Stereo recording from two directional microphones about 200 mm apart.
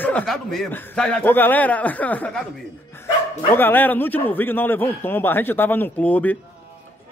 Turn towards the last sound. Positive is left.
turn(degrees=10)  # may be behind; listen again after turning